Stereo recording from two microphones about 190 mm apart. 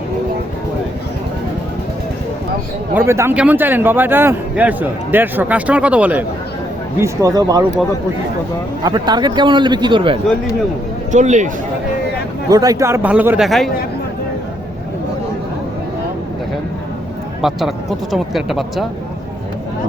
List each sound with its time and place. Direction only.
2.9 s a man's voice: 10° right (ahead or behind)
8.8 s a man's voice: 20° right (ahead or behind)
11.1 s speech: 40° right (ahead or behind)
12.5 s a man's voice: 20° right (ahead or behind); by 13.7 s centre (ahead or behind)
17.4 s speech: centre (ahead or behind)